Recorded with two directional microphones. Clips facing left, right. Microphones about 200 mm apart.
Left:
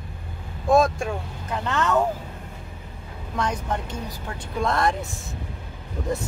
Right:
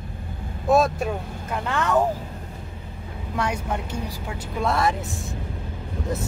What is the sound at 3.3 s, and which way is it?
Speech, 10° right (ahead or behind).